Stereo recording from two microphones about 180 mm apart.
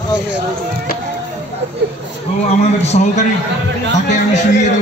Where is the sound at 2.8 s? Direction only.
35° left (ahead or behind).